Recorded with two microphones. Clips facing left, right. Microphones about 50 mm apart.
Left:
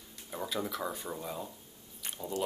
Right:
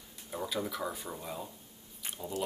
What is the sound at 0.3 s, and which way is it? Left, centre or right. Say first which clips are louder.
Speech: even; centre.